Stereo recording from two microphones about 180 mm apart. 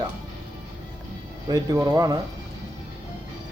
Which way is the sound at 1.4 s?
20° right (ahead or behind).